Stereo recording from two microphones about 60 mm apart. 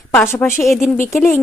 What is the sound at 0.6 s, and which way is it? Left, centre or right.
Speech, centre.